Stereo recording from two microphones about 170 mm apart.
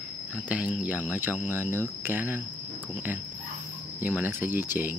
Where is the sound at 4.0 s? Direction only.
10° right (ahead or behind).